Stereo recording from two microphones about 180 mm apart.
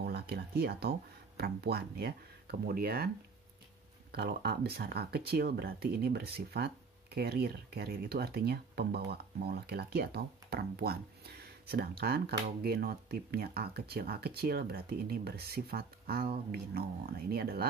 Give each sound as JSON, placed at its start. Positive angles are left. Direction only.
{"t": 0.0, "sound": "speech", "side_deg": -65}
{"t": 4.1, "sound": "speech", "side_deg": -65}